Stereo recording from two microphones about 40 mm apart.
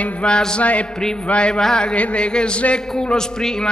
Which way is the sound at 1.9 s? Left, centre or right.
Left.